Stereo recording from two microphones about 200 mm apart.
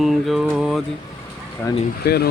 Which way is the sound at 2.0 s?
55° left (ahead or behind).